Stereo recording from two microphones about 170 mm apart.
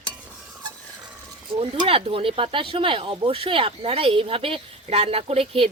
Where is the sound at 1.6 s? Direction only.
35° right (ahead or behind).